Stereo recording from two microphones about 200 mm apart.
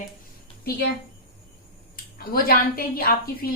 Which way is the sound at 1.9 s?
45° left (ahead or behind).